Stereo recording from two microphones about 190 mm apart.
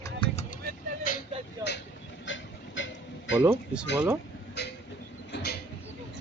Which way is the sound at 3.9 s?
10° right (ahead or behind).